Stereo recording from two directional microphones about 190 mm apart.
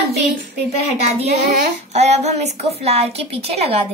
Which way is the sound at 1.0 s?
35° right (ahead or behind).